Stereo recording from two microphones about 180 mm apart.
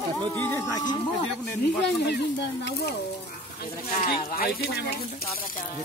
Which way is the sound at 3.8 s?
50° left (ahead or behind).